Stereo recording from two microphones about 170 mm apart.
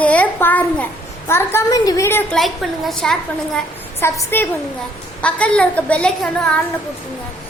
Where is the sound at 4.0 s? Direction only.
15° left (ahead or behind).